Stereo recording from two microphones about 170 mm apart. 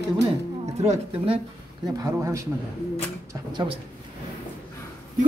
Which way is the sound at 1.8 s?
20° right (ahead or behind).